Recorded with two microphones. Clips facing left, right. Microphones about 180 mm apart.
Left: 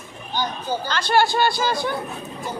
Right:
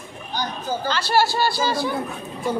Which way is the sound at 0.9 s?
5° right (ahead or behind).